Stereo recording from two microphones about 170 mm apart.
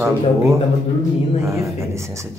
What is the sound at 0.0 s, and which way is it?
Speech, 15° right (ahead or behind).